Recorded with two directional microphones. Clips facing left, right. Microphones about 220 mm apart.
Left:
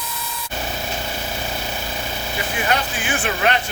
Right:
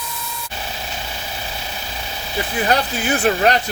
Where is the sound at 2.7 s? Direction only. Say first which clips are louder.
Right 4 dB; 40° right (ahead or behind).